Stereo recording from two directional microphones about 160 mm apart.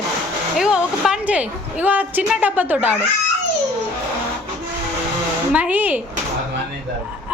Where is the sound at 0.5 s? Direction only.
5° right (ahead or behind).